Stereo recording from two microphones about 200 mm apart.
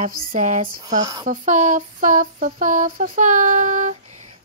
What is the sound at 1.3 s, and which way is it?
Child singing, 40° right (ahead or behind).